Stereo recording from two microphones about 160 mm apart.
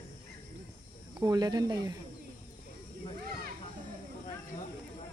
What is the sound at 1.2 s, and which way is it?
Speech, 25° right (ahead or behind).